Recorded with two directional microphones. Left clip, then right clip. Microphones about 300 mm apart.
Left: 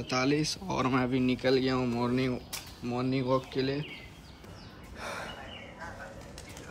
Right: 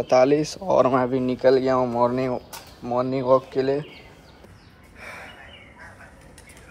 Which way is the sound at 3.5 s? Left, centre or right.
Centre.